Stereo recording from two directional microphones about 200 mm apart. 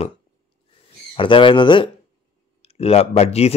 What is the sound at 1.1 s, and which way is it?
Speech, 25° left (ahead or behind).